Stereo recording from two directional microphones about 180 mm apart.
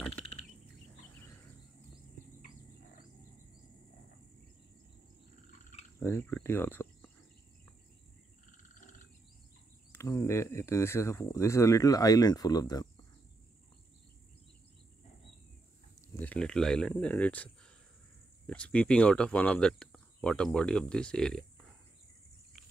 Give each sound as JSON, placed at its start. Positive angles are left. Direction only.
{"t": 0.1, "sound": "a sound", "side_deg": 30}
{"t": 5.9, "sound": "speech", "side_deg": 10}
{"t": 8.5, "sound": "frog", "side_deg": 45}
{"t": 9.9, "sound": "speech", "side_deg": 15}
{"t": 16.2, "sound": "speech", "side_deg": 5}
{"t": 18.5, "sound": "speech", "side_deg": 5}